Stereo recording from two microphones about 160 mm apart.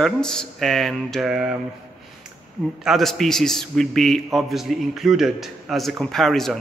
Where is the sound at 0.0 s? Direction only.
5° left (ahead or behind).